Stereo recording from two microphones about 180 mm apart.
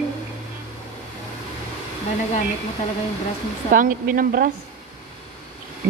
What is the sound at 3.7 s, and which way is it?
Speech, 50° right (ahead or behind).